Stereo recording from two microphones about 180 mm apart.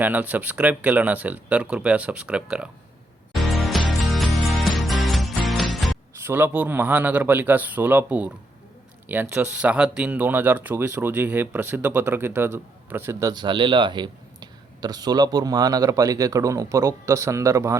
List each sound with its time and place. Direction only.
0.0 s speech: 10° right (ahead or behind)
3.3 s music: centre (ahead or behind)
6.1 s speech: 10° right (ahead or behind)